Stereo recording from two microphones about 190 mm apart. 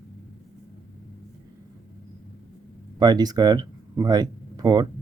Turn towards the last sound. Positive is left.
turn(degrees=-20)  # may be behind; listen again after turning